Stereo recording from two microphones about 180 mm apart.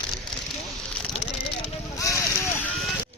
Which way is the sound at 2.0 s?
15° left (ahead or behind).